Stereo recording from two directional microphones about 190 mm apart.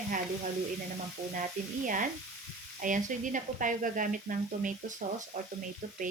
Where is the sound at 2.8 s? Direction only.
45° right (ahead or behind).